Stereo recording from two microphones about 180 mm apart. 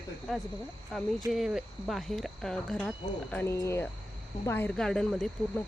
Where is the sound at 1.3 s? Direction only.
5° right (ahead or behind).